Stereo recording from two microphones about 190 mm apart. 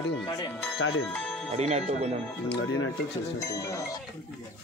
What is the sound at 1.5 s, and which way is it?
Speech, 35° right (ahead or behind).